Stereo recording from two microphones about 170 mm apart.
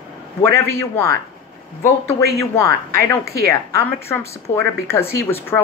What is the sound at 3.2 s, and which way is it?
Speech, 70° right (ahead or behind).